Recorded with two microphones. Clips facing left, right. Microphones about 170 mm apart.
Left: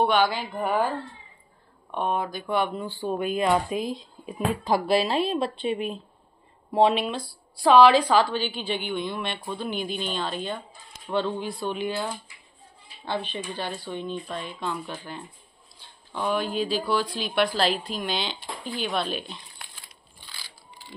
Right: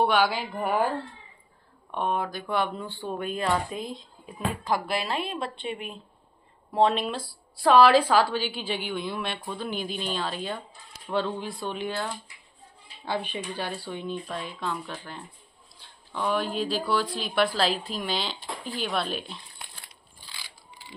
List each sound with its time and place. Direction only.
0.0 s speech: 5° right (ahead or behind)
1.9 s a woman's voice: centre (ahead or behind)
3.8 s speech: 25° right (ahead or behind)
4.3 s speech: 20° left (ahead or behind)
6.7 s speech: 10° left (ahead or behind)
7.1 s a woman's voice: 5° right (ahead or behind)
13.0 s a woman's voice: 10° right (ahead or behind)